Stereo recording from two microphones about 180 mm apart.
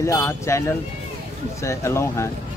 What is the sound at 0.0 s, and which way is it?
Speech, 15° left (ahead or behind).